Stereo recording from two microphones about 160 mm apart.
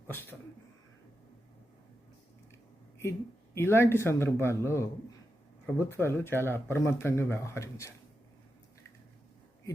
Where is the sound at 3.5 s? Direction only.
15° left (ahead or behind).